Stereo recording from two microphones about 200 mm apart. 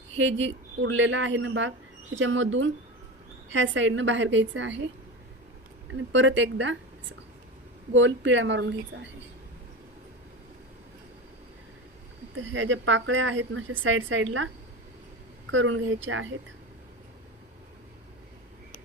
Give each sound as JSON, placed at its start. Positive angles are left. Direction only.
{"t": 0.2, "sound": "a woman's voice", "side_deg": -65}
{"t": 6.1, "sound": "a woman's voice", "side_deg": -70}
{"t": 7.9, "sound": "a woman's voice", "side_deg": -70}
{"t": 12.5, "sound": "a woman's voice", "side_deg": -75}
{"t": 15.5, "sound": "a woman's voice", "side_deg": -80}